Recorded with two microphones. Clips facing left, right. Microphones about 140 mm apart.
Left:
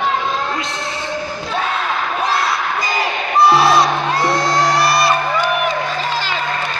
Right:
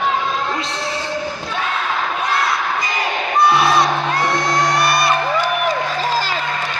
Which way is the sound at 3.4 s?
30° left (ahead or behind).